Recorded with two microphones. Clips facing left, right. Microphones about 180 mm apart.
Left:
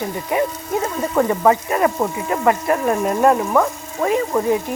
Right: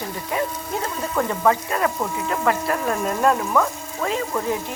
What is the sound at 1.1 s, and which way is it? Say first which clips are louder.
Speech: left 4 dB; 15° left (ahead or behind).